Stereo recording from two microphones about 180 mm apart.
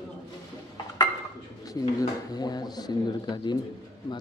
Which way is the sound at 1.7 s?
20° left (ahead or behind).